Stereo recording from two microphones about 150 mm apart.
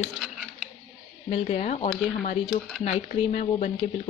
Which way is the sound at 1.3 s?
45° left (ahead or behind).